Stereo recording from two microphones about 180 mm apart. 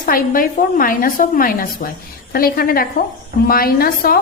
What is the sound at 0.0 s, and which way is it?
A woman's voice, 50° left (ahead or behind).